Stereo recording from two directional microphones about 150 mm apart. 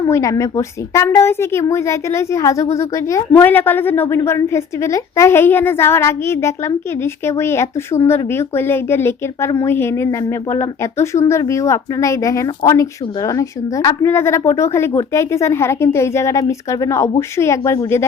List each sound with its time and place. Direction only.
0.1 s a woman's voice: 20° left (ahead or behind)